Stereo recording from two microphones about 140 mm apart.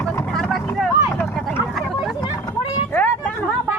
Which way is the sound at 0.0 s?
10° left (ahead or behind).